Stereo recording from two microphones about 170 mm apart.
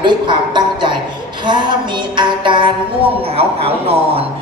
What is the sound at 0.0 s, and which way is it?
A woman's voice, 25° right (ahead or behind).